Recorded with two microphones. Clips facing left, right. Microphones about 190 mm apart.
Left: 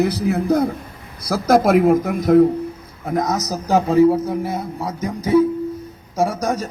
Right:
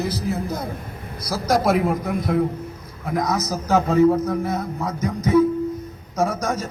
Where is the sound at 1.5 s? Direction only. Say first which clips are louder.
Left 6 dB; 50° left (ahead or behind).